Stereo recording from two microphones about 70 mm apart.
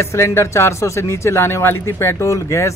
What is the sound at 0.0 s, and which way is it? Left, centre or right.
Speech, left.